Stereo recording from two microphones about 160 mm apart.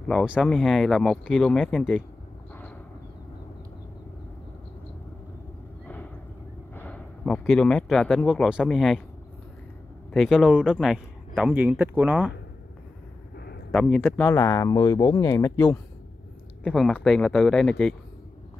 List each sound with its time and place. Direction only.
0.1 s speech: 5° right (ahead or behind)
6.7 s speech: 10° left (ahead or behind)
10.1 s speech: centre (ahead or behind)
13.7 s speech: centre (ahead or behind)
14.3 s speech: 20° left (ahead or behind)
15.5 s speech: 10° left (ahead or behind)